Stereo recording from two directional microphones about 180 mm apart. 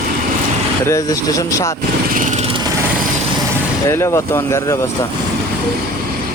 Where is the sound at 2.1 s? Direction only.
45° right (ahead or behind).